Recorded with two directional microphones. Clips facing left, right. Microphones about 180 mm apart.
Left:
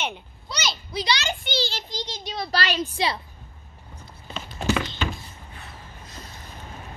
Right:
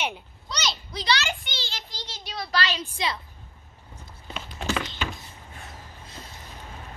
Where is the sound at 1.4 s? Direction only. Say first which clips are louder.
Left 10 dB; 35° left (ahead or behind).